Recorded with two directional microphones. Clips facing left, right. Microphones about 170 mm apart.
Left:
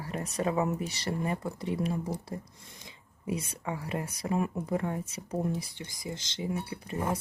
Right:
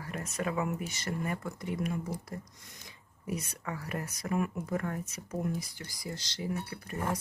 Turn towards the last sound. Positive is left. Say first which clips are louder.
# left 2 dB
turn(degrees=20)  # may be behind; listen again after turning